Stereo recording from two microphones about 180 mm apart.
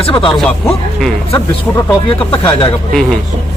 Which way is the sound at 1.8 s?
30° left (ahead or behind).